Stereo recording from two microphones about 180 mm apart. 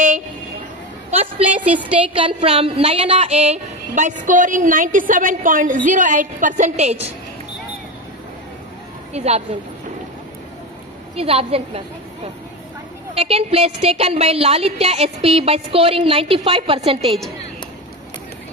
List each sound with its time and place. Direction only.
1.6 s a woman's voice: 10° right (ahead or behind)
2.1 s speech: 30° right (ahead or behind)
9.1 s a woman's voice: 35° right (ahead or behind)
11.1 s a woman's voice: 35° right (ahead or behind)
13.1 s a woman's voice: 35° right (ahead or behind)